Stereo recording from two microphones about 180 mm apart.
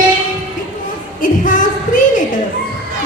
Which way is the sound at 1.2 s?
45° left (ahead or behind).